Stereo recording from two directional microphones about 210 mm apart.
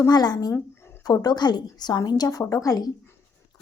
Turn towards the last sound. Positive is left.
turn(degrees=15)  # may be behind; listen again after turning